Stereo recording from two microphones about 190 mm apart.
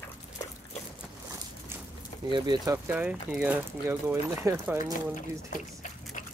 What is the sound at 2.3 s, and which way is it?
Speech, 20° right (ahead or behind).